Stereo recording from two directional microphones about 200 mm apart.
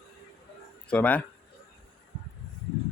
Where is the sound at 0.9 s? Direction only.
5° left (ahead or behind).